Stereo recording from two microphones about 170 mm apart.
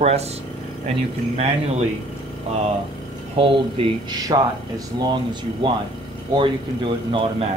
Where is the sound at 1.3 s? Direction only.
40° right (ahead or behind).